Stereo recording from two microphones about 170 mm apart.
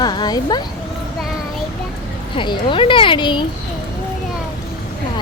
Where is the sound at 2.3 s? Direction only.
30° left (ahead or behind).